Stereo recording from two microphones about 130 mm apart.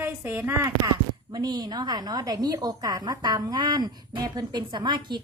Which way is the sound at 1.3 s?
30° right (ahead or behind).